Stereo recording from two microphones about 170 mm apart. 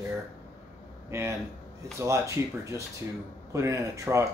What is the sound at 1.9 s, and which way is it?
Speech, 15° right (ahead or behind).